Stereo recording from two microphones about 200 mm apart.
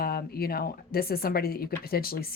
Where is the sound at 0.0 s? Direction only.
50° left (ahead or behind).